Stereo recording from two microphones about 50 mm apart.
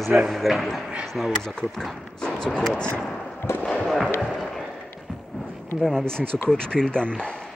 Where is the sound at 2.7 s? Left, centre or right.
Centre.